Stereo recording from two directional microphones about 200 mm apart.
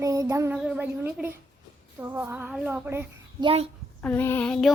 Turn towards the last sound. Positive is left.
turn(degrees=5)  # may be behind; listen again after turning